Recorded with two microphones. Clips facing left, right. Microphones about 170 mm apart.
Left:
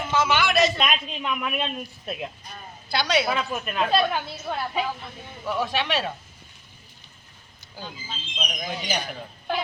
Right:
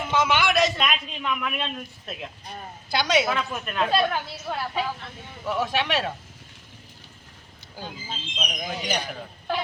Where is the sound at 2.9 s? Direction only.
15° right (ahead or behind).